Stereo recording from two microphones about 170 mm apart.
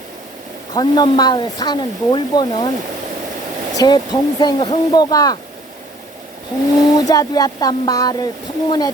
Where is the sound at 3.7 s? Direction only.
25° left (ahead or behind).